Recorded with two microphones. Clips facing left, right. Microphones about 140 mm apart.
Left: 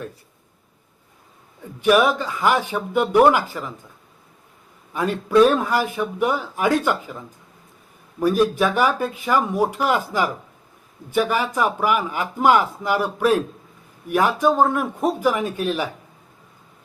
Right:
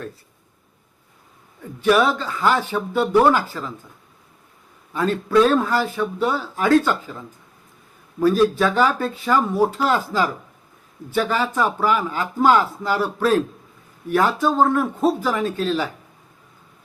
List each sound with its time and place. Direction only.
1.8 s speech: 15° left (ahead or behind)
4.9 s speech: 15° left (ahead or behind)
8.2 s speech: 15° left (ahead or behind)